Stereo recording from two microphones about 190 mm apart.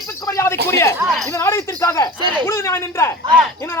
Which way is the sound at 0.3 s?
20° left (ahead or behind).